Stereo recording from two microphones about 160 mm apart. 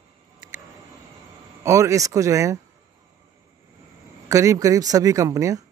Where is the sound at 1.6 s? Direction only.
20° right (ahead or behind).